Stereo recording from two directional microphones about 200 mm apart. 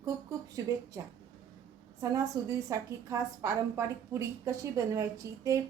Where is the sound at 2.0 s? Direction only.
15° right (ahead or behind).